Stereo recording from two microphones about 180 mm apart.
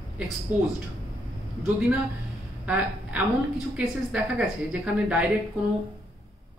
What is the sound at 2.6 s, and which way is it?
A woman's voice, 10° right (ahead or behind).